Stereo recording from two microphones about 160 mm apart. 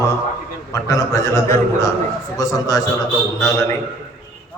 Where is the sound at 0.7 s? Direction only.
20° left (ahead or behind).